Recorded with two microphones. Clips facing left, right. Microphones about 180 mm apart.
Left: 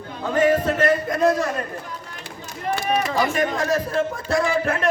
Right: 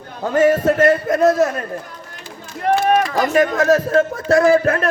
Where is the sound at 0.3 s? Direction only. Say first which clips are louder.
Right 5 dB; 45° right (ahead or behind).